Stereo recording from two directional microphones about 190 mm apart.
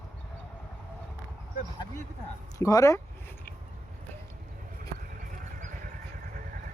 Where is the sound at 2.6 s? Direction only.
15° left (ahead or behind).